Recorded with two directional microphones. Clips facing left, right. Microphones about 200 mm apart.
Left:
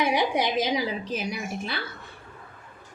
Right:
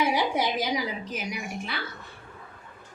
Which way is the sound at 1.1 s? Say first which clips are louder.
Left 3 dB; 35° left (ahead or behind).